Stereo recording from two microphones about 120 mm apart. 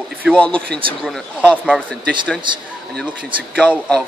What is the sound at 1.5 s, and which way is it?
Speech, 10° right (ahead or behind).